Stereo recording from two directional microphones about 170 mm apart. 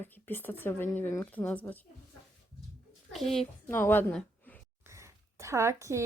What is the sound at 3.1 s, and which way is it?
A woman's voice, centre (ahead or behind).